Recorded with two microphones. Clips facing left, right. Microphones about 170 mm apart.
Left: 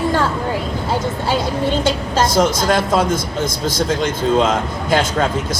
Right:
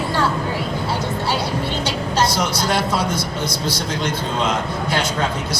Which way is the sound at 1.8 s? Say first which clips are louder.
Left 3 dB; 50° left (ahead or behind).